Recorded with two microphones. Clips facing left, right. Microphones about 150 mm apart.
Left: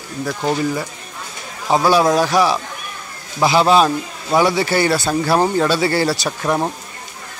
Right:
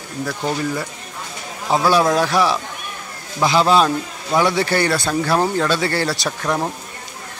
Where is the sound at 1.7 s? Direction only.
Centre (ahead or behind).